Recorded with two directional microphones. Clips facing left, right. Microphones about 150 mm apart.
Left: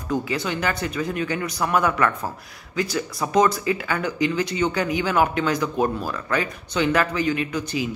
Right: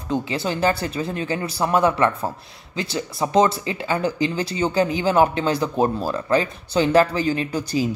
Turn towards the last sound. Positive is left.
turn(degrees=-35)  # may be behind; listen again after turning